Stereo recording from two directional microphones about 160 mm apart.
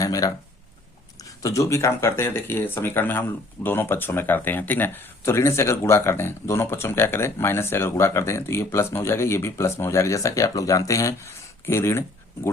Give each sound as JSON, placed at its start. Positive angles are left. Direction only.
{"t": 0.0, "sound": "speech", "side_deg": 20}
{"t": 1.4, "sound": "speech", "side_deg": 20}